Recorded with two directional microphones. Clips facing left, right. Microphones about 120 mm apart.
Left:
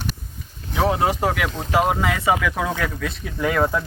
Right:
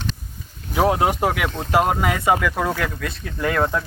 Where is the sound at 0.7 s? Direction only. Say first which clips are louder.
Right 2 dB; 10° right (ahead or behind).